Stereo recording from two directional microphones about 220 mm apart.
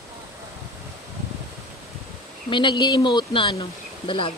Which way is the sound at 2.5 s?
20° left (ahead or behind).